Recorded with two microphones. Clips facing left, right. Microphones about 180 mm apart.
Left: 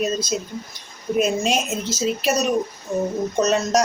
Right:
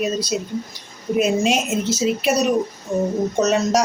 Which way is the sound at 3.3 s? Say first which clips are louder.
Right 1 dB; centre (ahead or behind).